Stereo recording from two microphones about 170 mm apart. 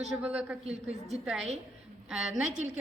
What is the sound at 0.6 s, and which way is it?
Speech, 40° right (ahead or behind).